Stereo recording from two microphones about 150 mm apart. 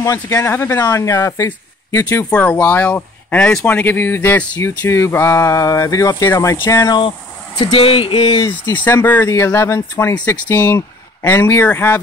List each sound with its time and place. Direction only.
0.0 s speech: 20° left (ahead or behind)
7.5 s speech: 35° left (ahead or behind)
8.6 s speech: 15° left (ahead or behind)